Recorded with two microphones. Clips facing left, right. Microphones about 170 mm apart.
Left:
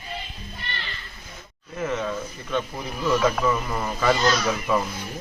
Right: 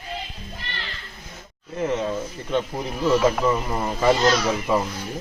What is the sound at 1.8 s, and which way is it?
A man's voice, 25° right (ahead or behind).